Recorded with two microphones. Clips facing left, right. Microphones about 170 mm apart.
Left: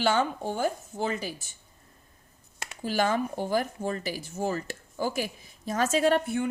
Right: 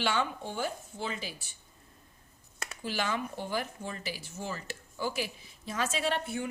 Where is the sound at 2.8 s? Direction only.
45° left (ahead or behind).